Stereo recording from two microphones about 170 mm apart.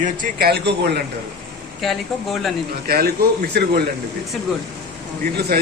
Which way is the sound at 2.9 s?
65° right (ahead or behind).